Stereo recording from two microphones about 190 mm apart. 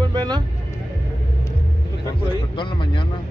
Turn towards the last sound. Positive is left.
turn(degrees=25)  # may be behind; listen again after turning